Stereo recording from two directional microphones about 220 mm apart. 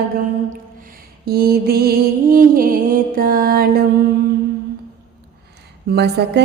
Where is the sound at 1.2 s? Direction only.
45° right (ahead or behind).